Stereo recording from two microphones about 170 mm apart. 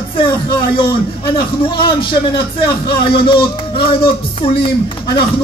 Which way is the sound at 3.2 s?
30° left (ahead or behind).